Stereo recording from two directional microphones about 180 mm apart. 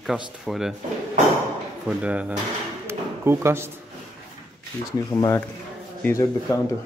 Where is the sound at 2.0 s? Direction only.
5° right (ahead or behind).